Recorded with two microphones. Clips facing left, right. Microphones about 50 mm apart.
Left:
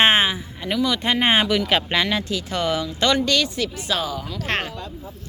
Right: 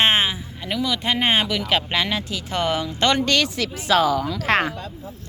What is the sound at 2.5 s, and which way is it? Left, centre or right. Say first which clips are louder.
Speech: right 2 dB; right.